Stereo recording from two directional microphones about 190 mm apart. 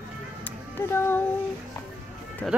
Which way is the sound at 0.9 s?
10° left (ahead or behind).